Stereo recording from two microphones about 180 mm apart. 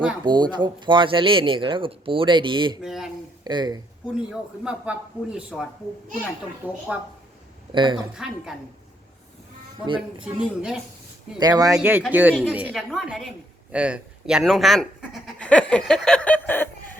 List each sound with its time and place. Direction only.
0.3 s speech: 25° right (ahead or behind)
2.8 s a man's voice: centre (ahead or behind)
3.4 s speech: 25° right (ahead or behind)
4.1 s a man's voice: 5° right (ahead or behind)
6.6 s speech: 10° left (ahead or behind)
7.7 s speech: 25° right (ahead or behind)
8.1 s a man's voice: 5° right (ahead or behind)
9.8 s speech: 25° right (ahead or behind)
10.4 s a man's voice: 5° right (ahead or behind)
11.3 s speech: 20° right (ahead or behind)
11.8 s a man's voice: 10° right (ahead or behind); by 16.6 s 10° left (ahead or behind)